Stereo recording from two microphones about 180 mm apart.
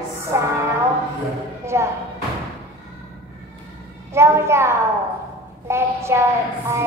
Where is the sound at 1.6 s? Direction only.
15° right (ahead or behind).